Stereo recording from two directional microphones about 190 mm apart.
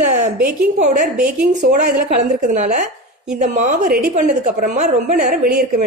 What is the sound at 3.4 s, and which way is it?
A woman's voice, 40° right (ahead or behind).